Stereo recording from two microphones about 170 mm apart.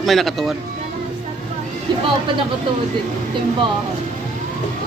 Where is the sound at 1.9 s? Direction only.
25° right (ahead or behind).